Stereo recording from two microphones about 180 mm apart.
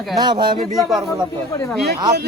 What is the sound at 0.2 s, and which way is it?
Speech, 25° right (ahead or behind).